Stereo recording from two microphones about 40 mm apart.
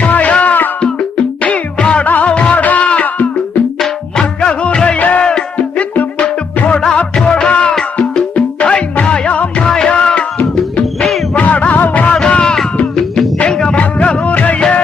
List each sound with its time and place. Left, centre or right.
0.0 s music: left
2.0 s music: left
2.3 s music: left
4.9 s music: left
11.3 s music: left
12.3 s music: left
13.7 s music: left